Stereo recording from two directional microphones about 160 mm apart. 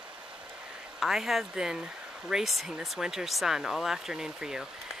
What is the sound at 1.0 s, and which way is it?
Speech, centre (ahead or behind).